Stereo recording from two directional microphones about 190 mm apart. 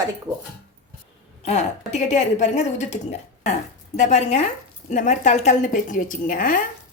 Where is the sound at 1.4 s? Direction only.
35° left (ahead or behind).